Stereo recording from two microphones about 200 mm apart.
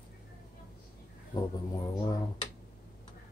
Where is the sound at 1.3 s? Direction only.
20° left (ahead or behind).